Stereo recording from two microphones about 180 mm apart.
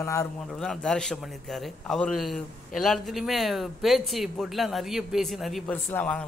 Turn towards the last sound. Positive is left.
turn(degrees=5)  # may be behind; listen again after turning